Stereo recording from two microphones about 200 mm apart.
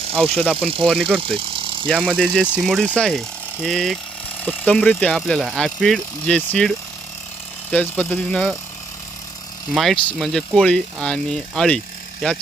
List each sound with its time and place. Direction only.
0.0 s speech: 30° right (ahead or behind)
1.2 s vehicle: 25° right (ahead or behind)
2.2 s speech: centre (ahead or behind)
9.7 s speech: centre (ahead or behind)